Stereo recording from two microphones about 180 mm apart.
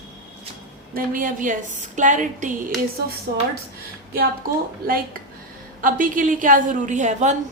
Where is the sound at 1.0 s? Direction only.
50° right (ahead or behind).